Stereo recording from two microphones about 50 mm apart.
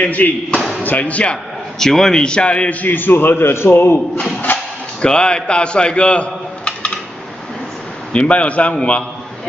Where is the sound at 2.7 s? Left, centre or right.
Left.